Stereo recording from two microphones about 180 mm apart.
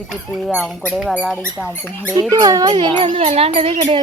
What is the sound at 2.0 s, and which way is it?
Speech, 20° right (ahead or behind).